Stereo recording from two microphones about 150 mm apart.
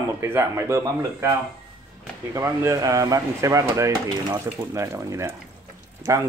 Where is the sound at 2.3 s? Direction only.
20° right (ahead or behind).